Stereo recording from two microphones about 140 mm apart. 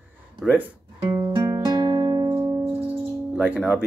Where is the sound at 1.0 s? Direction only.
20° right (ahead or behind).